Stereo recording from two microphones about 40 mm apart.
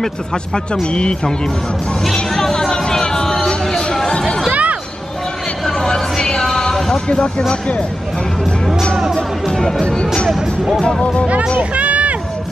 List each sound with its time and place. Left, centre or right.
0.8 s speech: left
2.3 s music: centre
2.7 s vehicle: centre
3.4 s a sound: centre
4.5 s music: right
5.7 s a sound: centre
7.1 s speech: left
9.6 s speech: centre
11.0 s speech: left
11.7 s run: right